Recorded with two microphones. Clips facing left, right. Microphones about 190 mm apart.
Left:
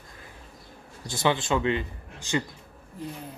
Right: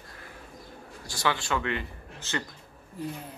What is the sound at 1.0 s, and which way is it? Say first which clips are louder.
Speech: left 4 dB; 20° left (ahead or behind).